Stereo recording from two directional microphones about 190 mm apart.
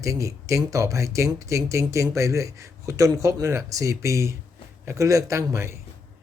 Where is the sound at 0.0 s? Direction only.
15° right (ahead or behind).